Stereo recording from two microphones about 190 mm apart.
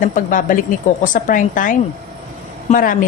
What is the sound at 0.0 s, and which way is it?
A woman's voice, 45° left (ahead or behind).